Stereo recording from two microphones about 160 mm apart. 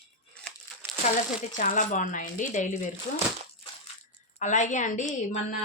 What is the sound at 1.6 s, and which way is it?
A woman's voice, 55° left (ahead or behind).